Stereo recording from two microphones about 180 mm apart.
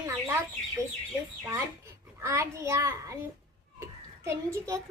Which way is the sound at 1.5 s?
15° right (ahead or behind).